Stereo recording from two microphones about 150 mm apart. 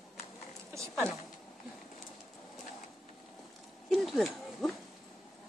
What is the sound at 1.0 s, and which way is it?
Speech, 20° right (ahead or behind).